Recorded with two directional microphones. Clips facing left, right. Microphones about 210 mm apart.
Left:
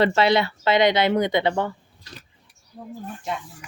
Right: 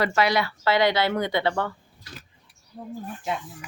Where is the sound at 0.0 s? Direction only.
25° left (ahead or behind).